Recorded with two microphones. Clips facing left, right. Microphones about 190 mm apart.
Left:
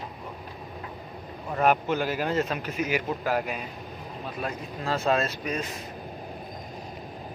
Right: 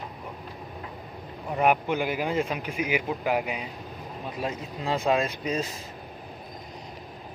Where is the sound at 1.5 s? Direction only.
15° right (ahead or behind).